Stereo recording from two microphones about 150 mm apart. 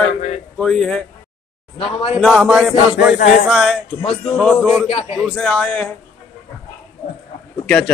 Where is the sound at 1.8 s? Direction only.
40° left (ahead or behind).